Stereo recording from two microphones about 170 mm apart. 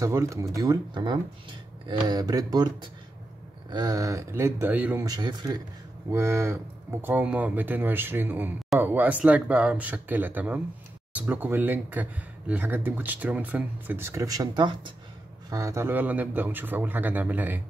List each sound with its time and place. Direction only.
0.0 s speech: 15° right (ahead or behind)
5.0 s speech: 25° right (ahead or behind)